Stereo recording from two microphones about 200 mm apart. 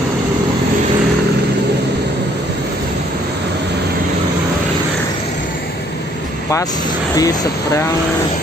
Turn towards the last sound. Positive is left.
turn(degrees=15)  # may be behind; listen again after turning